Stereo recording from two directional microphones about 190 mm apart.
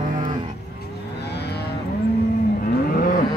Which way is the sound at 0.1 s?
45° right (ahead or behind).